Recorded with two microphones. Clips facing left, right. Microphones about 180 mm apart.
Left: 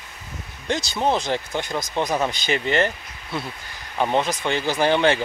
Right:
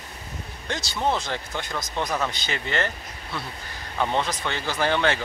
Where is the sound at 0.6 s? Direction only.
20° left (ahead or behind).